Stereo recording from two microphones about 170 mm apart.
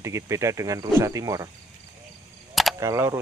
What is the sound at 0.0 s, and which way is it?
Speech, 15° right (ahead or behind).